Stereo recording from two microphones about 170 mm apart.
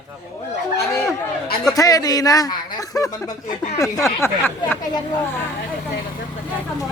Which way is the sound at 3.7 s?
20° left (ahead or behind).